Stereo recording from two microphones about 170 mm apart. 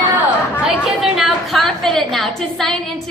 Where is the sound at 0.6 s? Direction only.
5° right (ahead or behind).